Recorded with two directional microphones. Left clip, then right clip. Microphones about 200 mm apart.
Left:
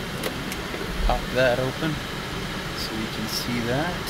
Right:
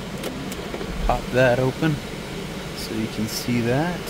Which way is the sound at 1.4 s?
45° right (ahead or behind).